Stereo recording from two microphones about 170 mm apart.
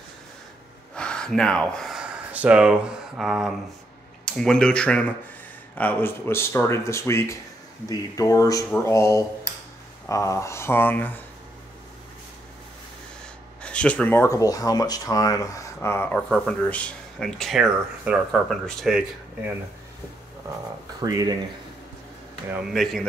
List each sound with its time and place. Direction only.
0.9 s speech: 5° left (ahead or behind)
13.6 s speech: 5° left (ahead or behind)
16.2 s speech: centre (ahead or behind)
21.0 s speech: 20° right (ahead or behind)
22.7 s speech: centre (ahead or behind)